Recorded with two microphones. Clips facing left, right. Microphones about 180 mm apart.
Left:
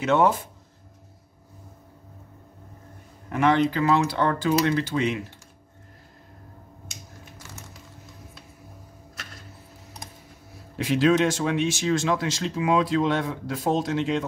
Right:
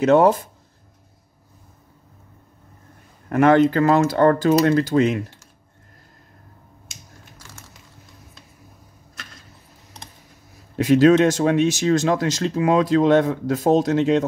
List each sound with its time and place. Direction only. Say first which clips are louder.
0.0 s speech: right 6 dB; 40° right (ahead or behind)
3.3 s speech: right 6 dB; 50° right (ahead or behind)
7.3 s typing: left 2 dB; 20° left (ahead or behind)
10.8 s speech: right 7 dB; 45° right (ahead or behind)